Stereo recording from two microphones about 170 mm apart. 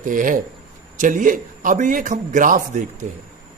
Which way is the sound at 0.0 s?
50° right (ahead or behind).